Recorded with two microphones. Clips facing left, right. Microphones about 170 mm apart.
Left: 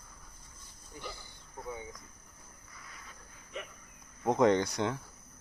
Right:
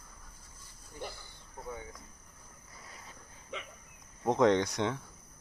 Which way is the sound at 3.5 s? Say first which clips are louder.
Left 1 dB; 90° right.